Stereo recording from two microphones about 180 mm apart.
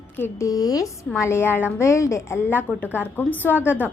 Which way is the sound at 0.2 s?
20° left (ahead or behind).